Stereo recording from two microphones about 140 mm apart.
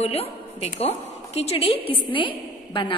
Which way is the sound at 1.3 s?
45° left (ahead or behind).